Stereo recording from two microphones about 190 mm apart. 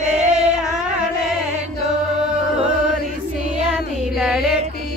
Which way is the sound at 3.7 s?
Centre (ahead or behind).